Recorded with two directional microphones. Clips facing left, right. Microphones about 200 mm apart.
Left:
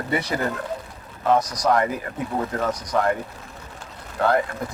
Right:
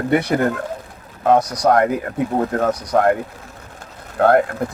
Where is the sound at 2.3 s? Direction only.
45° right (ahead or behind).